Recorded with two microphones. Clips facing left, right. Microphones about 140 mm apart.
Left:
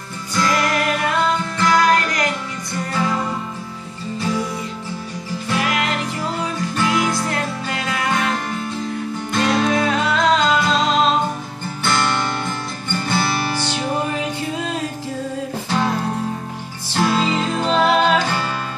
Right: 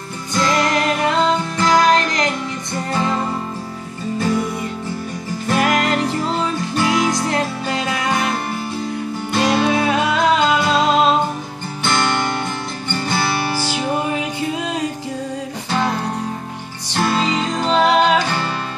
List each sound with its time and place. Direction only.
0.3 s music: 25° right (ahead or behind)
5.5 s music: 45° right (ahead or behind)
6.8 s music: 20° right (ahead or behind)
9.3 s music: 5° right (ahead or behind)